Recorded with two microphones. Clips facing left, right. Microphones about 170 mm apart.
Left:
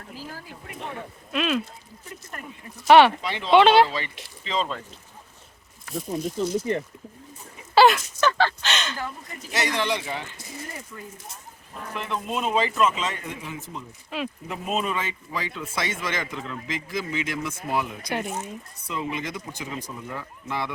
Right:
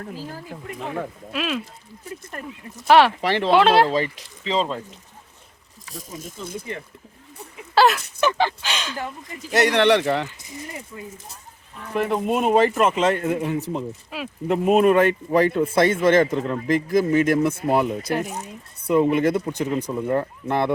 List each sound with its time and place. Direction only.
1.3 s speech: centre (ahead or behind)
2.8 s speech: centre (ahead or behind)
3.2 s speech: 70° right (ahead or behind)
3.5 s speech: centre (ahead or behind)
3.9 s speech: 35° right (ahead or behind)
6.4 s speech: 55° right (ahead or behind)
7.8 s a sound: centre (ahead or behind)
8.2 s speech: 15° right (ahead or behind)
9.5 s speech: 60° right (ahead or behind)
10.9 s speech: 25° right (ahead or behind)
11.9 s speech: 45° right (ahead or behind)
14.1 s speech: 5° right (ahead or behind)
14.4 s speech: 55° right (ahead or behind)